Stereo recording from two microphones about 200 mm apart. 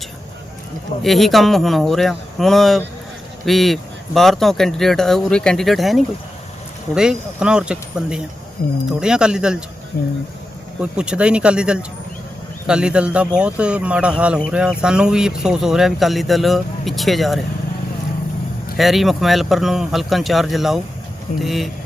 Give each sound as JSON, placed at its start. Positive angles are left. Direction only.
{"t": 1.0, "sound": "speech", "side_deg": 0}
{"t": 9.9, "sound": "speech", "side_deg": 50}
{"t": 10.8, "sound": "speech", "side_deg": -5}
{"t": 18.8, "sound": "speech", "side_deg": 0}